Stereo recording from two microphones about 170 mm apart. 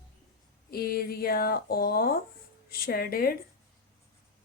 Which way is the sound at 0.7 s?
65° left (ahead or behind).